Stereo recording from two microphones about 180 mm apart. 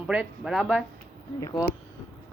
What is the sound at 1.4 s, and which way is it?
Speech, 20° left (ahead or behind).